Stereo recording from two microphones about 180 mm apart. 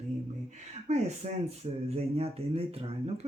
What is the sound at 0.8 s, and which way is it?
Speech, 40° right (ahead or behind).